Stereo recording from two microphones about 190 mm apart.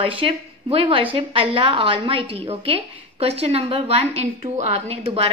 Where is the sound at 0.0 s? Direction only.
30° right (ahead or behind).